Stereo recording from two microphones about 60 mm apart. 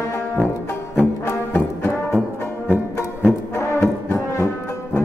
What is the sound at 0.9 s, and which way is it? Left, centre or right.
Music, left.